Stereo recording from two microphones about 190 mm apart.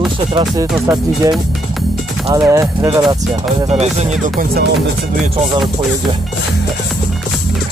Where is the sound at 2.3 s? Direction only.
15° right (ahead or behind).